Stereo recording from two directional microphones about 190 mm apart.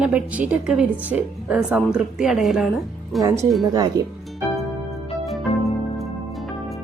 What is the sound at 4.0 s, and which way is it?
Speech, 15° right (ahead or behind).